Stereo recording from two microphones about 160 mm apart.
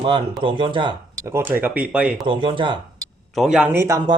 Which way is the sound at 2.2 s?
30° right (ahead or behind).